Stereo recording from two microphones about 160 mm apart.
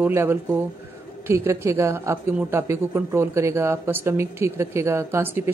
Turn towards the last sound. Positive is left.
turn(degrees=-15)  # may be behind; listen again after turning